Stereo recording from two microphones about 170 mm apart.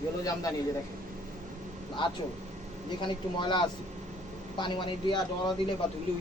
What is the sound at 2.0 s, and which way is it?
A man's voice, 30° left (ahead or behind).